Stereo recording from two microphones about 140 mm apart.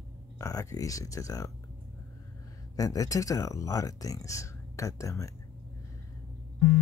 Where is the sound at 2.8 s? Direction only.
25° left (ahead or behind).